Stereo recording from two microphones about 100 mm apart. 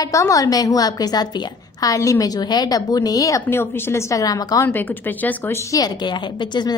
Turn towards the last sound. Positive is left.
turn(degrees=45)  # may be behind; listen again after turning